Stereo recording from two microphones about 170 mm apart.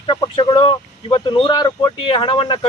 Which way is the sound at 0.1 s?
30° left (ahead or behind).